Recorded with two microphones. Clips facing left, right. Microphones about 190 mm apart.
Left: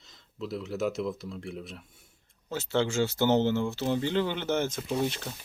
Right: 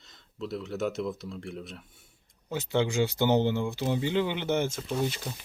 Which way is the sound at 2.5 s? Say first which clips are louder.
Even; 15° right (ahead or behind).